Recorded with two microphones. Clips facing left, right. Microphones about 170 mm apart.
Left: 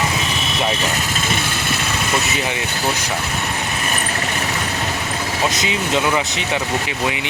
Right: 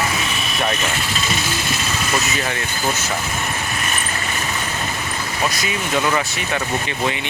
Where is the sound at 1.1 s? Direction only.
55° left (ahead or behind).